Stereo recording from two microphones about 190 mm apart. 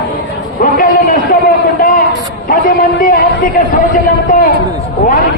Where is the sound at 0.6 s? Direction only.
45° left (ahead or behind).